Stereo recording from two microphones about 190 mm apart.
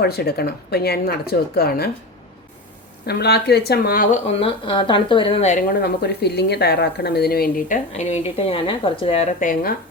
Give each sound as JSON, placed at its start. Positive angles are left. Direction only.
{"t": 0.0, "sound": "speech", "side_deg": 55}
{"t": 3.1, "sound": "speech", "side_deg": 60}
{"t": 4.4, "sound": "speech", "side_deg": 30}
{"t": 9.4, "sound": "speech", "side_deg": 45}